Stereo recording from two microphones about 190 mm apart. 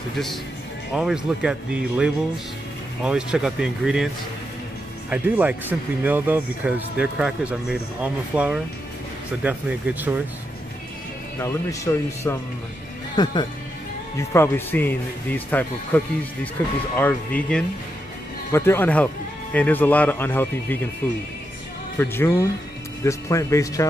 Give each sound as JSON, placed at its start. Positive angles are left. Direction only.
{"t": 0.9, "sound": "speech", "side_deg": -5}
{"t": 5.1, "sound": "speech", "side_deg": -5}
{"t": 11.3, "sound": "speech", "side_deg": 15}
{"t": 14.1, "sound": "speech", "side_deg": 15}
{"t": 21.9, "sound": "speech", "side_deg": 10}